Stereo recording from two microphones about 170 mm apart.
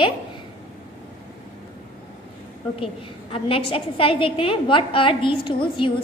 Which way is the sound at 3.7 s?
30° left (ahead or behind).